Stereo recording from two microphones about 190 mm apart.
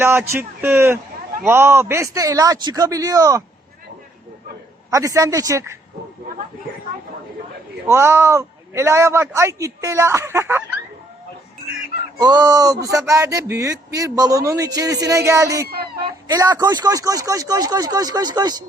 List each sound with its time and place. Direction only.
0.0 s a man's voice: 10° right (ahead or behind)
4.9 s a man's voice: 15° right (ahead or behind)
7.9 s a man's voice: 15° right (ahead or behind)
12.2 s a man's voice: 20° right (ahead or behind)
15.6 s speech: 55° right (ahead or behind)
16.2 s speech: 20° right (ahead or behind)